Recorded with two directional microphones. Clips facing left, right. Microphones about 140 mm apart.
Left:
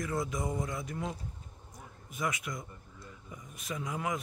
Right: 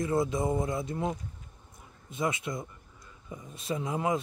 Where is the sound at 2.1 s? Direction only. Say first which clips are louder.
Right 4 dB; 25° right (ahead or behind).